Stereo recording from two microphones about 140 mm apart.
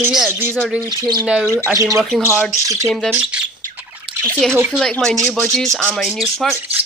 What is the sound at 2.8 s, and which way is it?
Speech, centre (ahead or behind).